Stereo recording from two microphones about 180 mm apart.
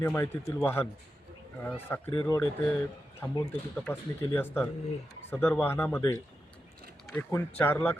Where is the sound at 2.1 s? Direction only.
20° left (ahead or behind).